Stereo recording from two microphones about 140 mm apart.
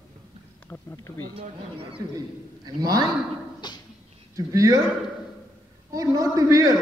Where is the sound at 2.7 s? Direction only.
30° right (ahead or behind).